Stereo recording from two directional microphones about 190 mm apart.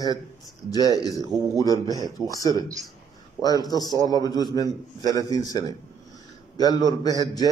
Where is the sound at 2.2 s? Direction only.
20° left (ahead or behind).